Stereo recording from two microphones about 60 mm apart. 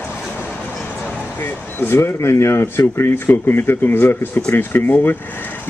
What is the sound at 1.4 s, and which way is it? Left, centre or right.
Speech, left.